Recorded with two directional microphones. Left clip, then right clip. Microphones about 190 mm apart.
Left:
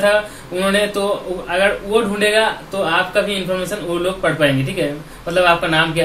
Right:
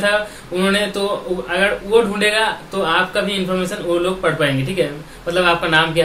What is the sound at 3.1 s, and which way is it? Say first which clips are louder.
Speech: left 1 dB; 15° right (ahead or behind).